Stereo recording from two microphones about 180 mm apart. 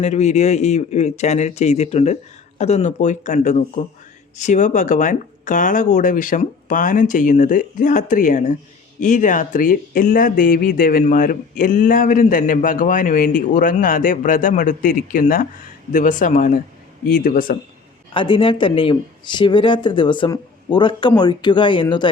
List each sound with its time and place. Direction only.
0.0 s speech: 40° left (ahead or behind)
18.1 s speech: 30° left (ahead or behind)